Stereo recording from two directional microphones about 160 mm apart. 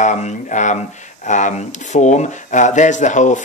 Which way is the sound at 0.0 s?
50° left (ahead or behind).